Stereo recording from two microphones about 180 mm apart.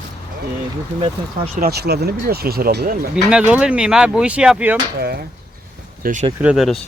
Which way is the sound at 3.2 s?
5° right (ahead or behind).